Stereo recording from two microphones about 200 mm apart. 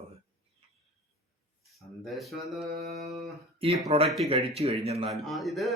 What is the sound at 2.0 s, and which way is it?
Speech, centre (ahead or behind).